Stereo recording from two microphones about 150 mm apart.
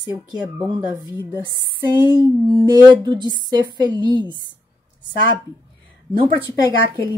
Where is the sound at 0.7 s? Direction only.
25° right (ahead or behind).